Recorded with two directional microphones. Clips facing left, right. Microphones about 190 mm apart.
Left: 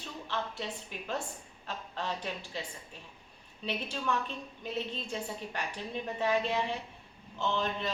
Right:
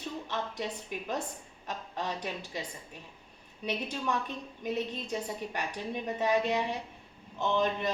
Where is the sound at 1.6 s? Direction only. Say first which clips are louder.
Right 1 dB; 15° right (ahead or behind).